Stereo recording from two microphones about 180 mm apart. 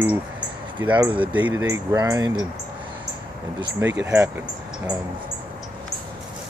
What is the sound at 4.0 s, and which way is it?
Speech, 5° right (ahead or behind).